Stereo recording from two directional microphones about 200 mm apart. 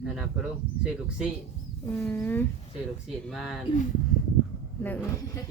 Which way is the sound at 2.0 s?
10° left (ahead or behind).